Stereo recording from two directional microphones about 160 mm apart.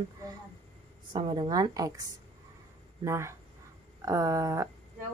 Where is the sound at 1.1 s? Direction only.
30° right (ahead or behind).